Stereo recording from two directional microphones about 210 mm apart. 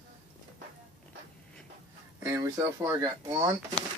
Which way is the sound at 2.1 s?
15° right (ahead or behind).